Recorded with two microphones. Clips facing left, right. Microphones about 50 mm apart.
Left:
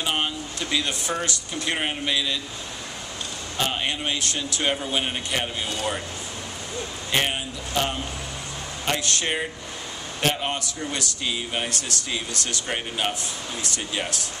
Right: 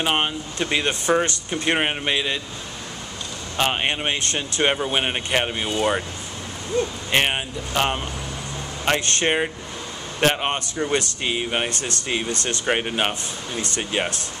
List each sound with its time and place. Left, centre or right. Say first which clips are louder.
0.0 s a man's voice: right 4 dB; right
3.5 s a man's voice: right 4 dB; right
7.1 s a man's voice: even; right